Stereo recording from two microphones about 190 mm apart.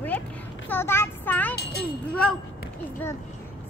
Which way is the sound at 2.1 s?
5° left (ahead or behind).